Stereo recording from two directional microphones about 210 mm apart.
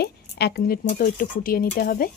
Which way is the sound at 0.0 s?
50° left (ahead or behind).